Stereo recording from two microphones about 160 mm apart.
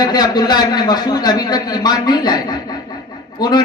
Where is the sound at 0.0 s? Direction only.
25° left (ahead or behind).